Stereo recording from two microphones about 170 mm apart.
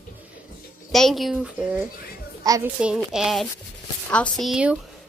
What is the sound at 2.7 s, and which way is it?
A child's voice, 5° right (ahead or behind).